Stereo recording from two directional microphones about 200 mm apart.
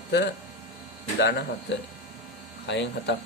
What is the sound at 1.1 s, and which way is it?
Speech, 60° left (ahead or behind).